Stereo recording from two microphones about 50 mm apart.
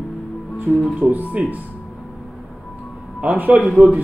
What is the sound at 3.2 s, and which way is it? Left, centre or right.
Speech, right.